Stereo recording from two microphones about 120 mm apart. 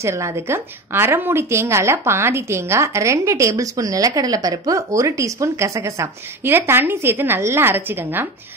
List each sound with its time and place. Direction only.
0.0 s a woman's voice: 25° right (ahead or behind)